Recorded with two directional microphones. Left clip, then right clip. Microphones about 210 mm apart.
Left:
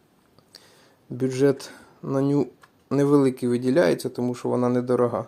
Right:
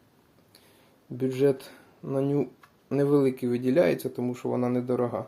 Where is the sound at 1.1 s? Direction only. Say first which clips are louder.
Left 3 dB; 30° left (ahead or behind).